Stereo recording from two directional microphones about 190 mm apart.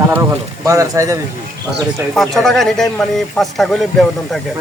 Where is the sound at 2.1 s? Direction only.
Centre (ahead or behind).